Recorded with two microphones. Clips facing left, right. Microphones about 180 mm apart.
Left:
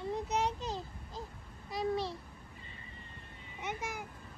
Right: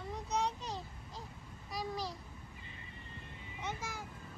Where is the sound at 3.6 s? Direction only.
20° left (ahead or behind).